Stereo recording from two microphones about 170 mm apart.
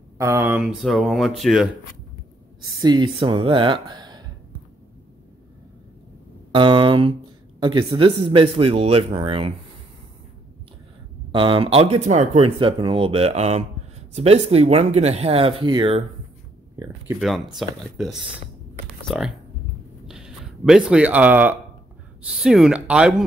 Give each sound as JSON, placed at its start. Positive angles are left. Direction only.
{"t": 0.2, "sound": "speech", "side_deg": -15}
{"t": 0.6, "sound": "speech", "side_deg": 0}
{"t": 2.8, "sound": "speech", "side_deg": -25}
{"t": 6.5, "sound": "speech", "side_deg": -30}
{"t": 11.3, "sound": "speech", "side_deg": -30}
{"t": 17.2, "sound": "speech", "side_deg": 0}